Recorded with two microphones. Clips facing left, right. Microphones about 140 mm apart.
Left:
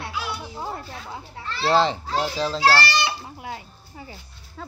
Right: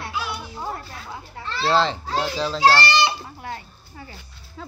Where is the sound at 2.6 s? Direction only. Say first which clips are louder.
Right 3 dB; 20° right (ahead or behind).